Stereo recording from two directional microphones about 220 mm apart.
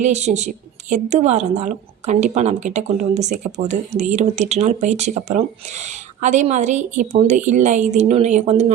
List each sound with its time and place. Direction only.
0.0 s a woman's voice: 30° right (ahead or behind)